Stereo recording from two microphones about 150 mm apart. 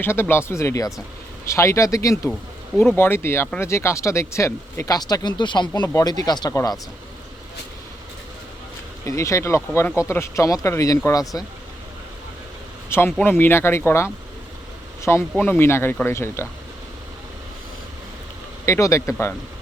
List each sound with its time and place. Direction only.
0.0 s speech: 15° left (ahead or behind)
9.0 s speech: 20° left (ahead or behind)
12.9 s speech: 15° left (ahead or behind)
18.6 s speech: 20° left (ahead or behind)